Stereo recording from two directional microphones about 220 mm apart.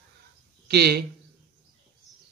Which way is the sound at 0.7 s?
45° right (ahead or behind).